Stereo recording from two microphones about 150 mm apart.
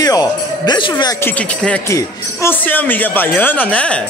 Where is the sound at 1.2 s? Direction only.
10° left (ahead or behind).